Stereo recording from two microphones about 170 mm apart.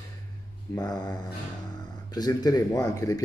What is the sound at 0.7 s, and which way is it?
Speech, 25° left (ahead or behind).